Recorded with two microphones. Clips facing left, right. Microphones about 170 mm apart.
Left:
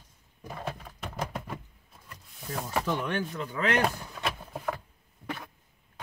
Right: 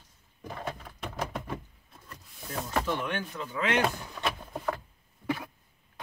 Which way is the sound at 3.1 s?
40° left (ahead or behind).